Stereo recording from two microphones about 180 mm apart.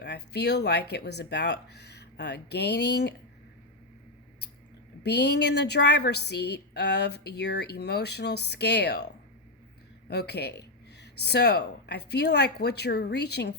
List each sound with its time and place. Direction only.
0.0 s a woman's voice: 70° left (ahead or behind)
5.0 s a woman's voice: 65° left (ahead or behind)
10.1 s a woman's voice: 65° left (ahead or behind)